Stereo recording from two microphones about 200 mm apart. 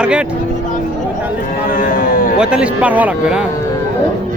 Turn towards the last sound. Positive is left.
turn(degrees=-5)  # may be behind; listen again after turning